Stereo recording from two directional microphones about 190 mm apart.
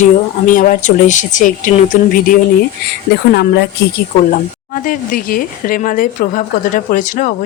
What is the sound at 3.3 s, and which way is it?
Speech, 60° left (ahead or behind).